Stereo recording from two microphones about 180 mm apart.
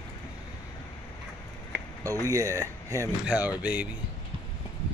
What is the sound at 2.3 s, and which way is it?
Speech, 15° right (ahead or behind).